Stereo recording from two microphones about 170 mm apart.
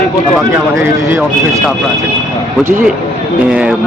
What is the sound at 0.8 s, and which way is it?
Speech, 15° right (ahead or behind).